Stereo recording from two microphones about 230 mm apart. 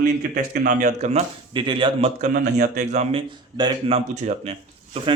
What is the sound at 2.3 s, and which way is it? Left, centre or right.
Speech, right.